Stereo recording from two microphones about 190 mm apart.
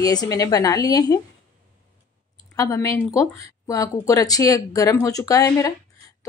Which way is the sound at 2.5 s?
20° left (ahead or behind).